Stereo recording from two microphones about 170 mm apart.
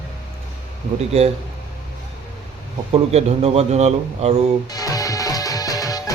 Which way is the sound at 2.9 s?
40° right (ahead or behind).